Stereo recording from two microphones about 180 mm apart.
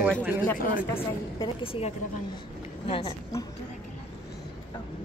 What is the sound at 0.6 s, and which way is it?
Speech, 45° left (ahead or behind).